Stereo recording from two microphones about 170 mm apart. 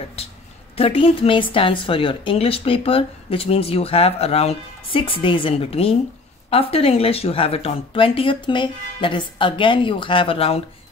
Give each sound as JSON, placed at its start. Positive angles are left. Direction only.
{"t": 0.7, "sound": "a woman's voice", "side_deg": 35}